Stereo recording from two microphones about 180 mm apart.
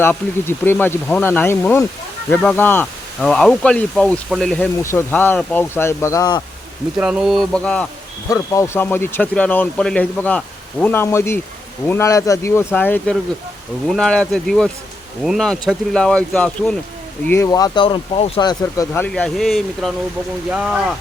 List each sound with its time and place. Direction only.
0.0 s speech: 10° left (ahead or behind)
7.0 s speech: 5° right (ahead or behind); by 19.0 s 20° left (ahead or behind)
19.0 s speech: 5° left (ahead or behind)